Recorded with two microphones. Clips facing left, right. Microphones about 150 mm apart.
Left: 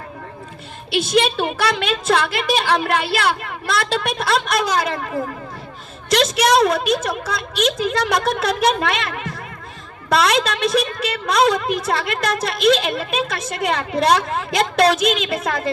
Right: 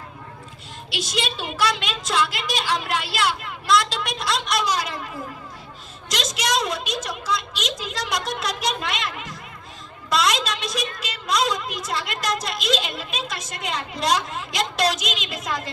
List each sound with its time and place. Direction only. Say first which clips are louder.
0.9 s a woman's voice: left 11 dB; 55° left (ahead or behind)